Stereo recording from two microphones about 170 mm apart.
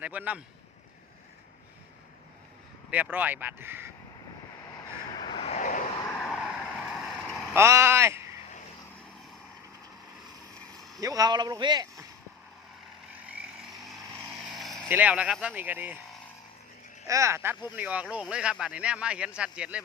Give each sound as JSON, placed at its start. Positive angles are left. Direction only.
{"t": 0.0, "sound": "speech", "side_deg": -10}
{"t": 2.9, "sound": "speech", "side_deg": -10}
{"t": 5.1, "sound": "vehicle", "side_deg": 25}
{"t": 6.1, "sound": "vehicle", "side_deg": 10}
{"t": 7.5, "sound": "speech", "side_deg": -15}
{"t": 10.8, "sound": "vehicle", "side_deg": 0}
{"t": 11.0, "sound": "speech", "side_deg": -20}
{"t": 13.1, "sound": "vehicle", "side_deg": -10}
{"t": 14.5, "sound": "vehicle", "side_deg": 0}
{"t": 14.9, "sound": "speech", "side_deg": -10}
{"t": 17.1, "sound": "speech", "side_deg": -15}